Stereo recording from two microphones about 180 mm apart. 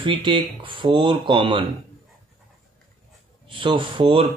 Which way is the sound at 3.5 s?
30° right (ahead or behind).